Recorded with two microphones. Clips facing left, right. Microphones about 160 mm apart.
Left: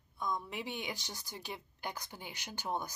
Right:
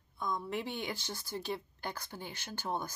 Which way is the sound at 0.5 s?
15° left (ahead or behind).